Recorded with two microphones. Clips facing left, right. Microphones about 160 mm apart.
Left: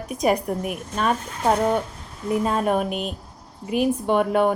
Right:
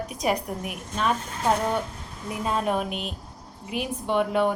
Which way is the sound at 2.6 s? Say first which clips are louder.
Left 4 dB; 45° left (ahead or behind).